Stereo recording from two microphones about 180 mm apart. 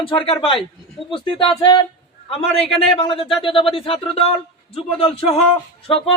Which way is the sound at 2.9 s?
30° left (ahead or behind).